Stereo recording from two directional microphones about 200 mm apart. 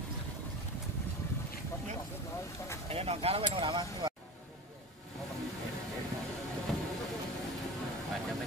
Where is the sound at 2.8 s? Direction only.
30° right (ahead or behind).